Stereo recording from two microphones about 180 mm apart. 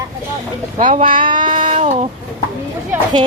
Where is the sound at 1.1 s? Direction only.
25° right (ahead or behind).